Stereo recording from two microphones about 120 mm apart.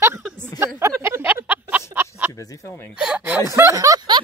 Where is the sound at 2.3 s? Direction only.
25° left (ahead or behind).